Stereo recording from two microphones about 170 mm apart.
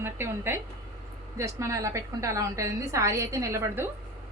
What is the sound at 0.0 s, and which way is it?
A woman's voice, 15° right (ahead or behind).